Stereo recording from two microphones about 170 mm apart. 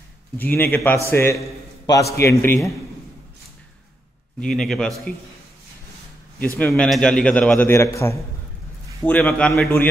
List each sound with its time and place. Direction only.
0.4 s a man's voice: 10° left (ahead or behind)
4.4 s a man's voice: 5° left (ahead or behind)
6.4 s a man's voice: 10° left (ahead or behind)